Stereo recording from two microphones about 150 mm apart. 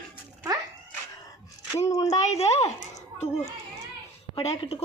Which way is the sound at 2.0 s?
45° left (ahead or behind).